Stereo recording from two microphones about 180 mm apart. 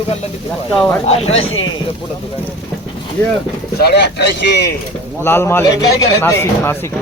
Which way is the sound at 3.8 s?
70° left (ahead or behind).